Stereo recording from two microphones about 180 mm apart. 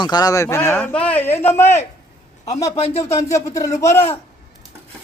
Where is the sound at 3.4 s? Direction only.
20° left (ahead or behind).